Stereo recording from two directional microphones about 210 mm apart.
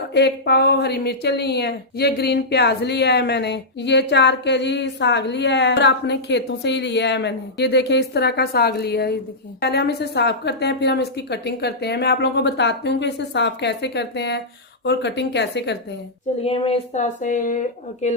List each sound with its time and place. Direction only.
0.1 s speech: 55° left (ahead or behind)
16.4 s speech: 30° left (ahead or behind)